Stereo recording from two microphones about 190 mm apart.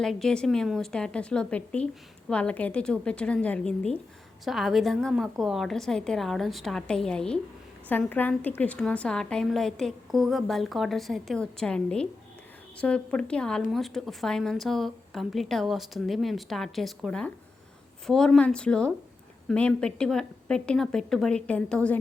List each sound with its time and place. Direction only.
0.0 s a woman's voice: centre (ahead or behind)